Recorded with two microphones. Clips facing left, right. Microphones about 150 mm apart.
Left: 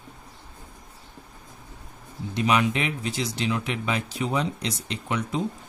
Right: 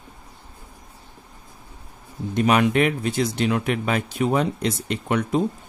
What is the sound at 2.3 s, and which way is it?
Speech, 50° right (ahead or behind).